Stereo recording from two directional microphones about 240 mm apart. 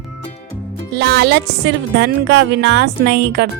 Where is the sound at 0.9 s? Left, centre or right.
Right.